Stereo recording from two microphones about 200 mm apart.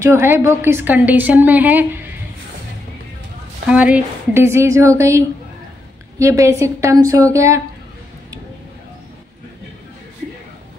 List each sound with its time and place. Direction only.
0.0 s a woman's voice: 15° right (ahead or behind)
3.6 s a woman's voice: 5° right (ahead or behind)